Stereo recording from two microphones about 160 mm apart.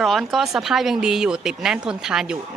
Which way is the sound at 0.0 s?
Centre (ahead or behind).